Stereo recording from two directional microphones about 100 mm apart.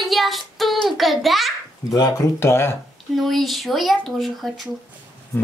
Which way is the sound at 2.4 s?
25° left (ahead or behind).